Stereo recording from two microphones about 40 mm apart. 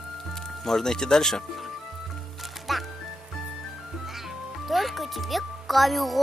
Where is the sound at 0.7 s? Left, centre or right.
Centre.